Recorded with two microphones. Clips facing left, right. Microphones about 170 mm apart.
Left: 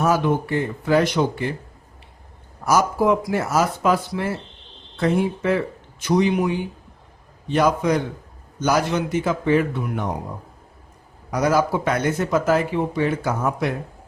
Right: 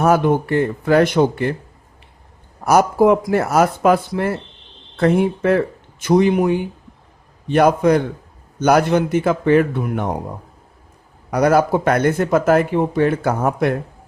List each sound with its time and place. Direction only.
0.0 s speech: 55° right (ahead or behind)
2.6 s speech: 55° right (ahead or behind)
11.3 s speech: 60° right (ahead or behind)